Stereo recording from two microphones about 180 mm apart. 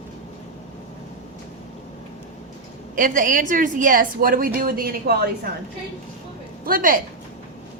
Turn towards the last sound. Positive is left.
turn(degrees=-50)  # may be behind; listen again after turning